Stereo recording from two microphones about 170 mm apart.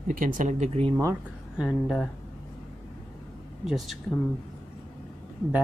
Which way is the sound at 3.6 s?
Centre (ahead or behind).